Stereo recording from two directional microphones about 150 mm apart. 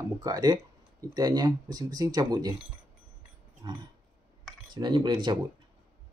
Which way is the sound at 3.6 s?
25° right (ahead or behind).